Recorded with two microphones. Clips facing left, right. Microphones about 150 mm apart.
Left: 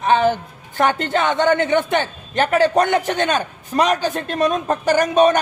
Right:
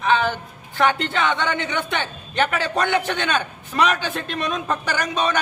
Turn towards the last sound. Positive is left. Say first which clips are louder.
# left 9 dB
turn(degrees=50)  # may be behind; listen again after turning